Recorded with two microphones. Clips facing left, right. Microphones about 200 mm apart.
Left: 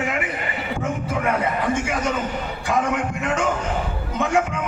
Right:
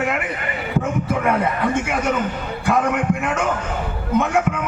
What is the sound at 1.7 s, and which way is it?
A man's voice, 60° right (ahead or behind).